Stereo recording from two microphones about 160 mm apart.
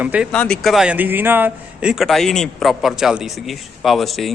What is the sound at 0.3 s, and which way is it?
A man's voice, 5° left (ahead or behind).